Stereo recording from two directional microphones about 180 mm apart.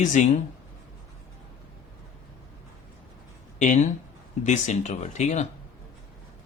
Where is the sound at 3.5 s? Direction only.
40° left (ahead or behind).